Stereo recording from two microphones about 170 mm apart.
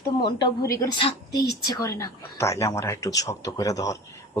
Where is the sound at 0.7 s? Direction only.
20° left (ahead or behind).